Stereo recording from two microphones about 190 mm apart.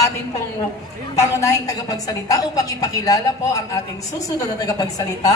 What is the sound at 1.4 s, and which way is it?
A woman's voice, 20° left (ahead or behind).